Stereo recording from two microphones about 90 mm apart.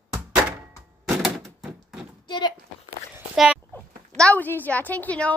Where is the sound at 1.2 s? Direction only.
Centre (ahead or behind).